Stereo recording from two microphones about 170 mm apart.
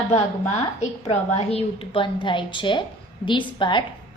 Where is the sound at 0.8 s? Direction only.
40° left (ahead or behind).